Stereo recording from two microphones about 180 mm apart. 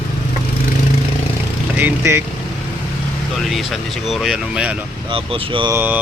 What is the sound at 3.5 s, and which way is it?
Speech, centre (ahead or behind).